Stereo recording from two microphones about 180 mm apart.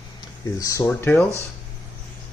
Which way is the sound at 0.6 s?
20° left (ahead or behind).